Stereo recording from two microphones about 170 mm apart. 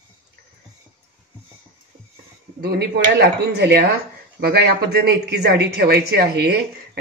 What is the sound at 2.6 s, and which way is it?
Speech, 70° right (ahead or behind).